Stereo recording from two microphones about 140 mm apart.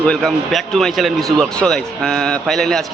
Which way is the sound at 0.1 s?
Centre (ahead or behind).